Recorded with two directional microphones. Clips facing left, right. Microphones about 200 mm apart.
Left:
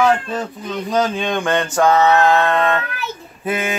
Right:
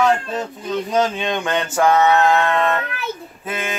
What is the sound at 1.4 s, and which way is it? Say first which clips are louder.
Mantra: left 2 dB; 5° right (ahead or behind).